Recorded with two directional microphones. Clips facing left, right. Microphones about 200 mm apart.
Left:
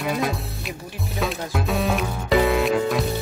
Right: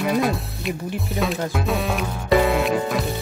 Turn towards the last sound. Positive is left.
turn(degrees=0)  # may be behind; listen again after turning